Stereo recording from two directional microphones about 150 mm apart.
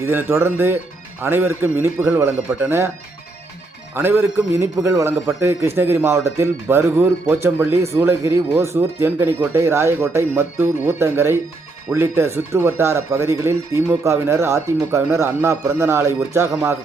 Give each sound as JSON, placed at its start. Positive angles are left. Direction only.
{"t": 0.0, "sound": "a man's voice", "side_deg": -15}
{"t": 3.9, "sound": "a man's voice", "side_deg": -15}